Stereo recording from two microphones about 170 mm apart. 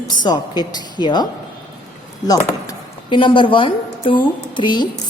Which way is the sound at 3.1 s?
30° left (ahead or behind).